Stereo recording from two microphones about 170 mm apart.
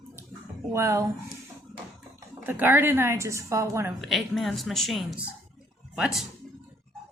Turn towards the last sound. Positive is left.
turn(degrees=-5)  # may be behind; listen again after turning